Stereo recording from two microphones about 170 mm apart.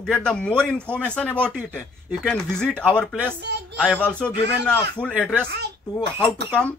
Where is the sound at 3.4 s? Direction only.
80° right.